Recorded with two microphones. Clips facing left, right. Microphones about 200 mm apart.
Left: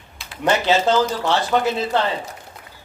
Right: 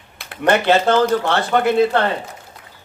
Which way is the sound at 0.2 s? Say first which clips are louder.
Right 3 dB; 60° right (ahead or behind).